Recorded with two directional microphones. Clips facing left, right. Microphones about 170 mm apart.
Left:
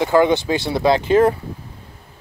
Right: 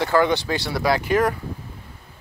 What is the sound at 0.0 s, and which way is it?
Speech, 20° left (ahead or behind).